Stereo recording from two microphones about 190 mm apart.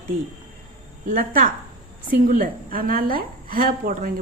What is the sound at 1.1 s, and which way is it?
A woman's voice, 45° right (ahead or behind).